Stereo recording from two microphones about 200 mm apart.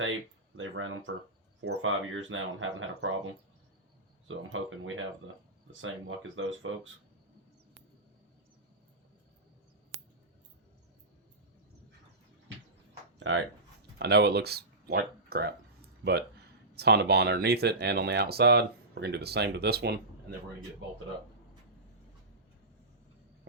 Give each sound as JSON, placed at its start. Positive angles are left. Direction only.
{"t": 0.0, "sound": "speech", "side_deg": -80}
{"t": 13.1, "sound": "a sound", "side_deg": -65}
{"t": 14.0, "sound": "speech", "side_deg": -55}
{"t": 16.7, "sound": "speech", "side_deg": -55}